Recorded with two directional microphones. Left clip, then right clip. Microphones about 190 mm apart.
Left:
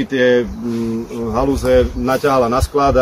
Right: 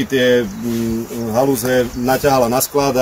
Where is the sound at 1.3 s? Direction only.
25° right (ahead or behind).